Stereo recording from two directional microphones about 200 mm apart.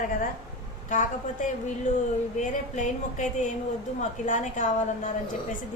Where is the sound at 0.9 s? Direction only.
40° left (ahead or behind).